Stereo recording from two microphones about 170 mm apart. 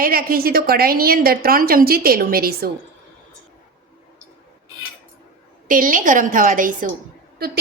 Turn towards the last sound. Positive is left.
turn(degrees=-70)  # may be behind; listen again after turning